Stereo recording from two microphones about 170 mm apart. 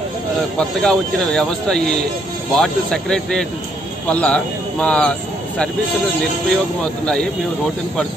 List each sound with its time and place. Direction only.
0.6 s speech: 5° left (ahead or behind)
6.8 s speech: 5° left (ahead or behind)